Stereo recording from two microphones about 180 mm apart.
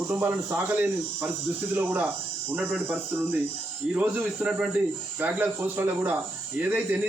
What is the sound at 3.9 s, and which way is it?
A man's voice, 10° right (ahead or behind).